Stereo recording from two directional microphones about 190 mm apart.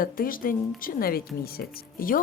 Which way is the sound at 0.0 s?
50° left (ahead or behind).